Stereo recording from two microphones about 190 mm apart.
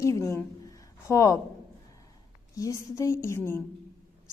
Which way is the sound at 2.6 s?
15° left (ahead or behind).